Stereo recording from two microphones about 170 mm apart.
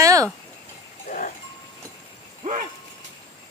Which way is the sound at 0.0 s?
20° right (ahead or behind).